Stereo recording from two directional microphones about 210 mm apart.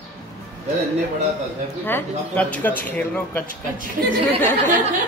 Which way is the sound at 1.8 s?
10° left (ahead or behind).